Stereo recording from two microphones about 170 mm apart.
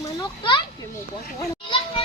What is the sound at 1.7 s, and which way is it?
Children playing, 35° left (ahead or behind).